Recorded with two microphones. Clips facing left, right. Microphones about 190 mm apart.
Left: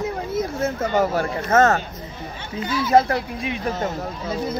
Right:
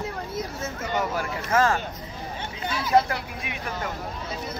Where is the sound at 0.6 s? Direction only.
55° left (ahead or behind).